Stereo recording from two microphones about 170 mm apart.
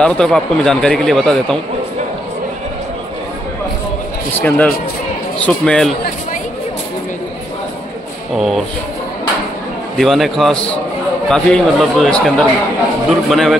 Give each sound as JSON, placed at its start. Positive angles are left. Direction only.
{"t": 0.0, "sound": "speech", "side_deg": 5}
{"t": 4.4, "sound": "speech", "side_deg": 10}
{"t": 8.4, "sound": "speech", "side_deg": 0}
{"t": 9.9, "sound": "speech", "side_deg": 0}